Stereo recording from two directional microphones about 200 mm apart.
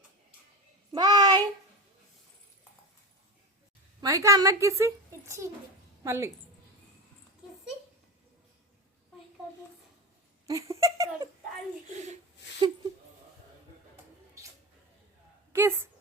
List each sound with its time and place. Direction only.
0.9 s child singing: 20° right (ahead or behind)
4.0 s a woman's voice: 15° right (ahead or behind)
10.4 s giggle: 15° right (ahead or behind)
11.9 s a sound: 35° right (ahead or behind)
15.5 s a woman's voice: 10° right (ahead or behind)